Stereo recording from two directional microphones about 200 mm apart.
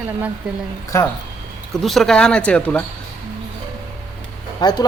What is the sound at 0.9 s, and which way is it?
Speech, 15° left (ahead or behind).